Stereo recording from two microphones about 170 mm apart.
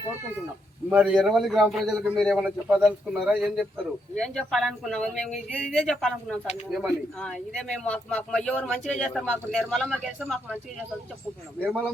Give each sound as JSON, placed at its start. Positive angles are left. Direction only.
{"t": 0.9, "sound": "speech", "side_deg": -5}